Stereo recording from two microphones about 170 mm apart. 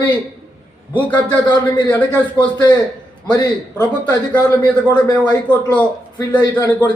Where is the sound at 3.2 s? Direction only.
20° left (ahead or behind).